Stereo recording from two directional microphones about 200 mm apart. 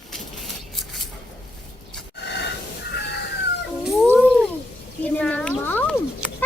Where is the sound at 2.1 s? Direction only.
55° left (ahead or behind).